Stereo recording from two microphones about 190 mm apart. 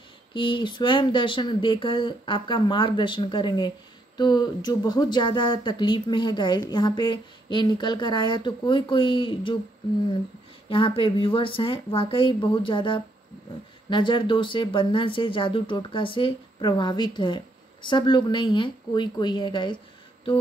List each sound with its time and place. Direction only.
0.3 s speech: 25° left (ahead or behind)
10.7 s speech: 30° left (ahead or behind)